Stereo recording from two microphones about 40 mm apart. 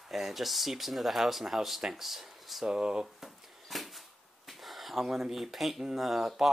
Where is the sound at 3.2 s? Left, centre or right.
Centre.